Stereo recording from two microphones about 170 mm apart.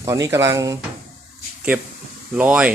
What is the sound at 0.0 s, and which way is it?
Speech, 20° right (ahead or behind).